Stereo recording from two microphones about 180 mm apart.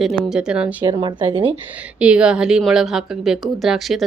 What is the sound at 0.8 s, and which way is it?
Speech, 25° right (ahead or behind).